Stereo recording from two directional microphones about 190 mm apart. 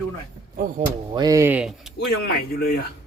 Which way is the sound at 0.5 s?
40° right (ahead or behind).